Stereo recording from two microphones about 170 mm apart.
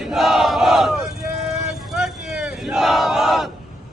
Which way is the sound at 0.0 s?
Centre (ahead or behind).